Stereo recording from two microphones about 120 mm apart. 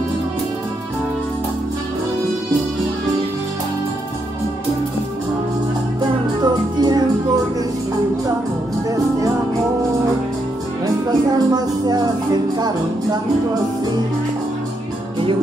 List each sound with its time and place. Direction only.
6.4 s music: 35° right (ahead or behind)
11.1 s a sound: 35° right (ahead or behind)
12.5 s music: 35° right (ahead or behind)